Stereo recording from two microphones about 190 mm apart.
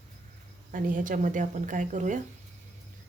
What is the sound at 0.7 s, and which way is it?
Speech, 45° right (ahead or behind).